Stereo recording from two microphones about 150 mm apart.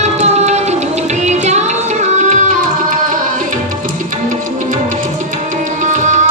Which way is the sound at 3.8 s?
60° right (ahead or behind).